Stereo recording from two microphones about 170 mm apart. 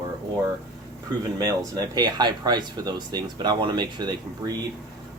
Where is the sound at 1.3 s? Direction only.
20° right (ahead or behind).